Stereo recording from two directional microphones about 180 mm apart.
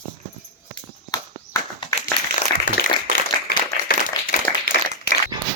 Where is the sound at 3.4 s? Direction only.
55° left (ahead or behind).